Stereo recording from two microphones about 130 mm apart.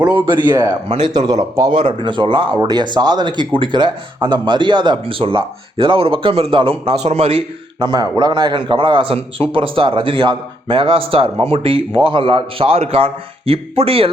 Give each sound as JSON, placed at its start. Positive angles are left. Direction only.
{"t": 0.3, "sound": "speech", "side_deg": -35}
{"t": 0.9, "sound": "a man's voice", "side_deg": -50}
{"t": 1.1, "sound": "speech", "side_deg": -30}
{"t": 1.8, "sound": "speech", "side_deg": -40}
{"t": 7.8, "sound": "a man's voice", "side_deg": -30}